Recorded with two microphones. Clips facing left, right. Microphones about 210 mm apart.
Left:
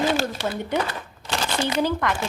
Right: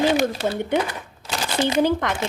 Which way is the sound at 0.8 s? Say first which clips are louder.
Right 2 dB; 15° right (ahead or behind).